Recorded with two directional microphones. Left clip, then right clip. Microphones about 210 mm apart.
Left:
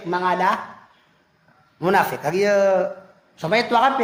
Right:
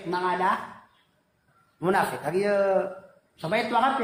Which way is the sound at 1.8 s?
45° left (ahead or behind).